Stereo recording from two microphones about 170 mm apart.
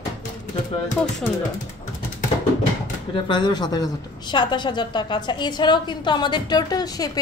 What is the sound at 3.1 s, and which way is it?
A woman's voice, 30° left (ahead or behind).